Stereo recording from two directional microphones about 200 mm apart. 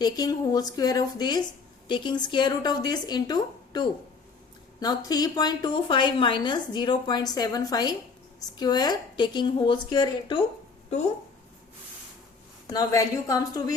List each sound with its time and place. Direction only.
0.0 s a woman's voice: 20° left (ahead or behind)
12.6 s a woman's voice: 15° left (ahead or behind)